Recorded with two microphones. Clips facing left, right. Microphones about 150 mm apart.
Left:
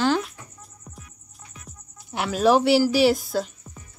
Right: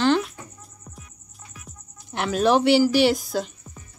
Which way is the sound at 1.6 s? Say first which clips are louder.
Even; 5° left (ahead or behind).